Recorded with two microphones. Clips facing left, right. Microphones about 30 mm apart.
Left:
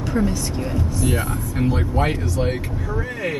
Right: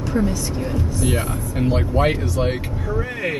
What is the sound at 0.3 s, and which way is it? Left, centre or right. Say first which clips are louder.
Speech: right 1 dB; centre.